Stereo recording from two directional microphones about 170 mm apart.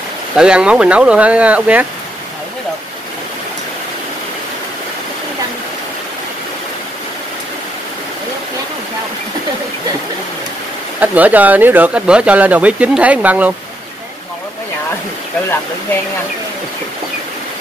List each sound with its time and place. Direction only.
0.4 s speech: 5° right (ahead or behind)
11.0 s speech: 10° right (ahead or behind)